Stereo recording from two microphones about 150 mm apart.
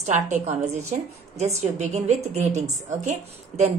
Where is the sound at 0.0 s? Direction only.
50° right (ahead or behind).